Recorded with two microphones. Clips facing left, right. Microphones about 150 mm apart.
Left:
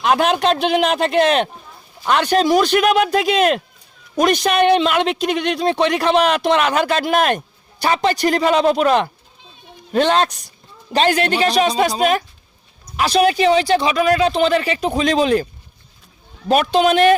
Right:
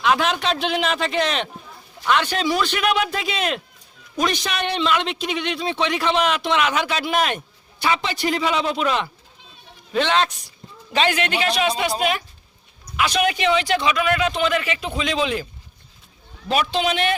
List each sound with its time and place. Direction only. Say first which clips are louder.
0.0 s a man's voice: left 5 dB; 50° left (ahead or behind)
16.5 s speech: left 7 dB; 50° left (ahead or behind)